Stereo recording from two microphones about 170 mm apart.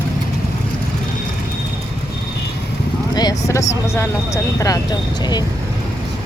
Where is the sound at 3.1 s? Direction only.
20° left (ahead or behind).